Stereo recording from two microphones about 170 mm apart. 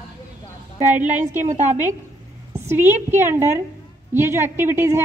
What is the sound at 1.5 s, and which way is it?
Speech, 45° right (ahead or behind).